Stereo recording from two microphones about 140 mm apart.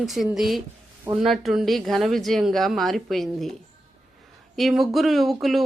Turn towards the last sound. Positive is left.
turn(degrees=0)  # may be behind; listen again after turning